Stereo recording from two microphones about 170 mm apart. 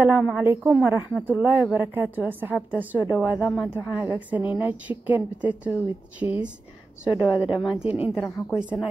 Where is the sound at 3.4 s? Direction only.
5° right (ahead or behind).